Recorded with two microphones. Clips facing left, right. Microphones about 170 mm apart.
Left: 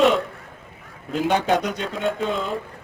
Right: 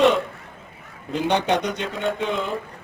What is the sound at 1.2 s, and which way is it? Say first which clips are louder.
A man's voice: left 1 dB; centre (ahead or behind).